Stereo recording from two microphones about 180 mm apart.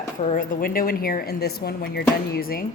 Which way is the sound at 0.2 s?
35° left (ahead or behind).